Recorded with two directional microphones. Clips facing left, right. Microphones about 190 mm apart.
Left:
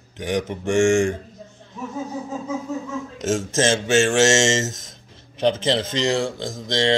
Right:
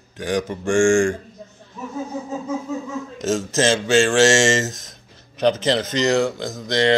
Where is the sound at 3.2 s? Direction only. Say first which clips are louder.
Right 1 dB; 25° left (ahead or behind).